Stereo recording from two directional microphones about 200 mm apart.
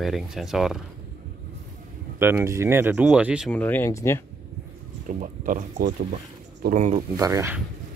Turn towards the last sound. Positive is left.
turn(degrees=-10)  # may be behind; listen again after turning